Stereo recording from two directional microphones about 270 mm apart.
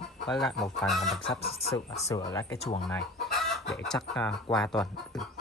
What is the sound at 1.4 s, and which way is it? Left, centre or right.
Speech, left.